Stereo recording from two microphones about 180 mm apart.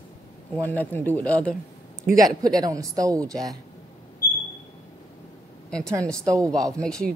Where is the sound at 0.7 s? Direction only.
10° left (ahead or behind).